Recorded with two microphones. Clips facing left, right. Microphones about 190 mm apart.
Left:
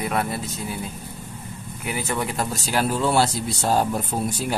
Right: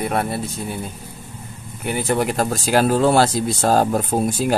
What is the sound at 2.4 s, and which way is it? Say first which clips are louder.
Speech: right 6 dB; 90° right.